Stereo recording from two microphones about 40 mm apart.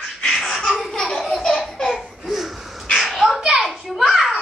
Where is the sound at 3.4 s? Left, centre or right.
Centre.